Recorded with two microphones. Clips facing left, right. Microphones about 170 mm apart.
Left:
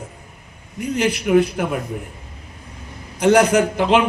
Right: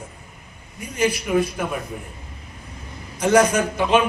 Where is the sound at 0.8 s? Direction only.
70° left (ahead or behind).